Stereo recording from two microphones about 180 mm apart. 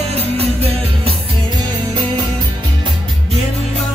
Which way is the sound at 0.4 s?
35° right (ahead or behind).